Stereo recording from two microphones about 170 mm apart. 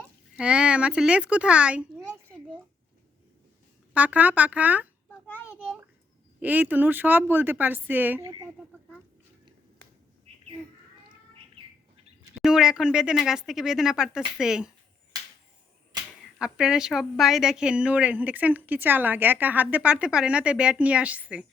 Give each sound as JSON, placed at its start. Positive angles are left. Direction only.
{"t": 0.3, "sound": "speech", "side_deg": -5}
{"t": 3.9, "sound": "a woman's voice", "side_deg": -10}
{"t": 5.2, "sound": "a sound", "side_deg": 10}
{"t": 6.4, "sound": "a woman's voice", "side_deg": -10}
{"t": 10.3, "sound": "squawk", "side_deg": -40}
{"t": 12.4, "sound": "speech", "side_deg": -5}
{"t": 16.4, "sound": "a woman's voice", "side_deg": -5}